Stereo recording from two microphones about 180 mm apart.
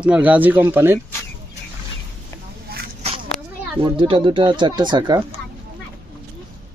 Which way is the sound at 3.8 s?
30° right (ahead or behind).